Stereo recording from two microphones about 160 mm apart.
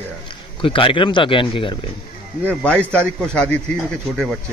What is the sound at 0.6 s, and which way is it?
Speech, 35° left (ahead or behind).